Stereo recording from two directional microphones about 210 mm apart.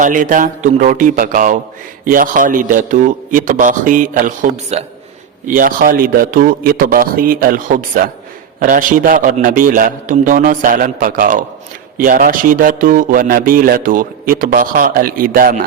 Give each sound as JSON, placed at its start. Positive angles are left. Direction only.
{"t": 0.0, "sound": "a man's voice", "side_deg": -40}
{"t": 5.5, "sound": "a man's voice", "side_deg": -40}